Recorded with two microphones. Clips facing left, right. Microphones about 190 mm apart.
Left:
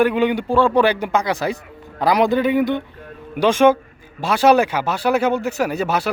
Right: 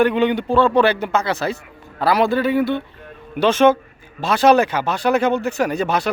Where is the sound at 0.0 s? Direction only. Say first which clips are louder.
Even; 10° left (ahead or behind).